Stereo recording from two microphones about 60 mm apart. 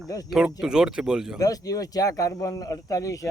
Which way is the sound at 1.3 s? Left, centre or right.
Left.